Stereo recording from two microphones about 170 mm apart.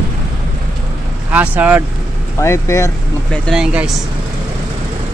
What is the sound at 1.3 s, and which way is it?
Speech, 10° right (ahead or behind).